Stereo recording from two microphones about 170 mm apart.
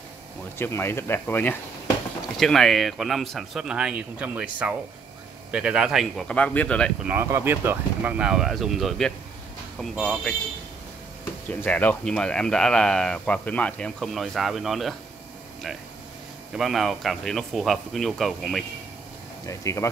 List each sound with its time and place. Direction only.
0.6 s speech: 15° left (ahead or behind)
7.1 s speech: 15° right (ahead or behind); by 10.3 s 5° left (ahead or behind)
11.4 s speech: 10° left (ahead or behind)
16.5 s speech: centre (ahead or behind)
19.4 s speech: 15° left (ahead or behind)